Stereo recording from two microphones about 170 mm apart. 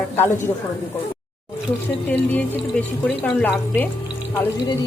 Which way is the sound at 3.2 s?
10° left (ahead or behind).